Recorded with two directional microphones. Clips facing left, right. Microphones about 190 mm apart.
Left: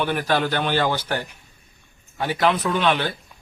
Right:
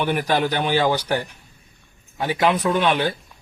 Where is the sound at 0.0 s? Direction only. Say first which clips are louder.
Right 1 dB; 15° right (ahead or behind).